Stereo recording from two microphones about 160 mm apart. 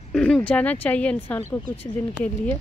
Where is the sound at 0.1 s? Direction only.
5° left (ahead or behind).